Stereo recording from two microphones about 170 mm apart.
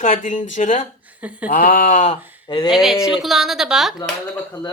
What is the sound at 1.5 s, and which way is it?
Speech, 55° left (ahead or behind).